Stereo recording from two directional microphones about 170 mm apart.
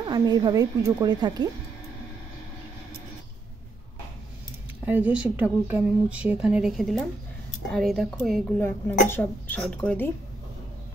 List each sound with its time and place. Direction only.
0.0 s a woman's voice: 25° right (ahead or behind)
4.8 s speech: 10° right (ahead or behind)
8.5 s speech: 15° left (ahead or behind)